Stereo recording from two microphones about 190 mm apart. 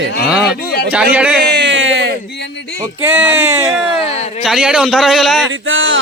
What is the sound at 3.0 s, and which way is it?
Speech, 10° right (ahead or behind).